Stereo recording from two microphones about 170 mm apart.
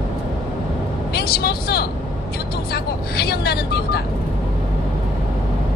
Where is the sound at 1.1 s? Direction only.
65° left (ahead or behind).